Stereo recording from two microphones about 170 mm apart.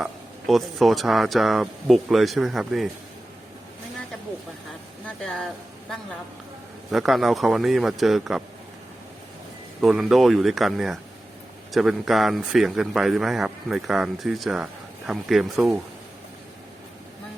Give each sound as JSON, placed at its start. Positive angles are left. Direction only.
{"t": 0.0, "sound": "a man's voice", "side_deg": 0}
{"t": 5.0, "sound": "a man's voice", "side_deg": 5}
{"t": 6.9, "sound": "a man's voice", "side_deg": 0}
{"t": 9.8, "sound": "a man's voice", "side_deg": 0}